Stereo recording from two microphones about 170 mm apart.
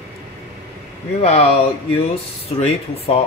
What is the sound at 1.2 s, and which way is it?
Speech, 35° left (ahead or behind).